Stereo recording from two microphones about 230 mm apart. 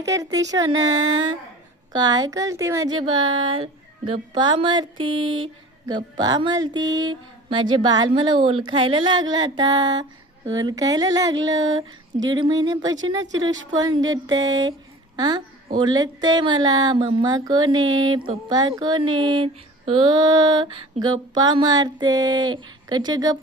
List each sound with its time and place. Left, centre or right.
0.0 s female singing: centre
1.9 s speech: centre
5.0 s a sound: right
6.1 s speech: centre
9.3 s female singing: centre
17.9 s speech: centre
19.1 s female singing: centre